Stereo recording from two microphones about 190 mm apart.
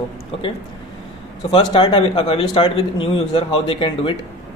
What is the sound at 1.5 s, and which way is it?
A man's voice, 25° left (ahead or behind).